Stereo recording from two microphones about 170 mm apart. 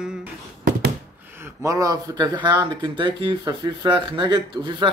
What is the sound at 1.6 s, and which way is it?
Speech, 20° right (ahead or behind).